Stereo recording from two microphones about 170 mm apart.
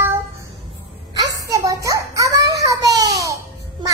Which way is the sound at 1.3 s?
20° right (ahead or behind).